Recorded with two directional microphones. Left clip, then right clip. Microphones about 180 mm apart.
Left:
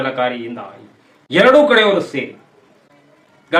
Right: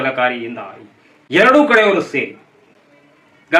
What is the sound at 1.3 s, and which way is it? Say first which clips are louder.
Speech: even; 10° left (ahead or behind).